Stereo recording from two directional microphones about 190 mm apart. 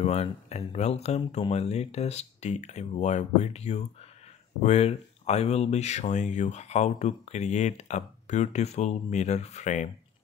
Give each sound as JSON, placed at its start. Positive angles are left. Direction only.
{"t": 0.0, "sound": "speech", "side_deg": 35}